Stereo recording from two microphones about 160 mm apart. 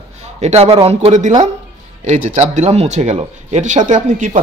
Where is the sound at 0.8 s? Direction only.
45° right (ahead or behind).